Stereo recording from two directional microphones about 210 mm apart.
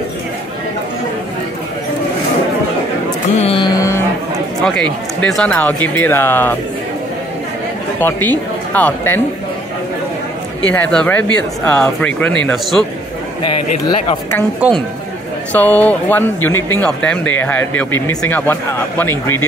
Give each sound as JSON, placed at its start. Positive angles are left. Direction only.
{"t": 3.3, "sound": "a sound", "side_deg": 25}
{"t": 5.2, "sound": "speech", "side_deg": 5}
{"t": 8.0, "sound": "speech", "side_deg": 10}
{"t": 10.7, "sound": "speech", "side_deg": 5}
{"t": 13.5, "sound": "speech", "side_deg": 25}
{"t": 14.6, "sound": "a woman's voice", "side_deg": -5}
{"t": 15.5, "sound": "speech", "side_deg": 10}